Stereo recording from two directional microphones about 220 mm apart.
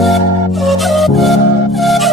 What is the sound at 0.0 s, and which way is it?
Music, centre (ahead or behind).